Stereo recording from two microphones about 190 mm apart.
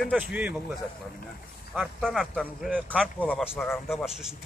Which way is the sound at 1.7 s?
Centre (ahead or behind).